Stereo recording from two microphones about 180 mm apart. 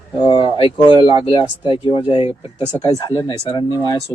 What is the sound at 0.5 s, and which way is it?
Speech, 30° left (ahead or behind).